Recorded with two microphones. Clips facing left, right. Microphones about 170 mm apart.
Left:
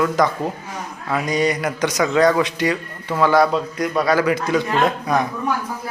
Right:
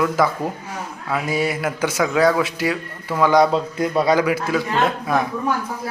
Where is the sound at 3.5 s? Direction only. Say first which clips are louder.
Right 1 dB; 25° right (ahead or behind).